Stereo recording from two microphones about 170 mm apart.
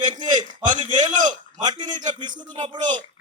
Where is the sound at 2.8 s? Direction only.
45° right (ahead or behind).